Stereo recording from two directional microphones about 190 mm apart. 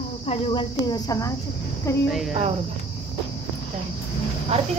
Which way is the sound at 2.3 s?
35° right (ahead or behind).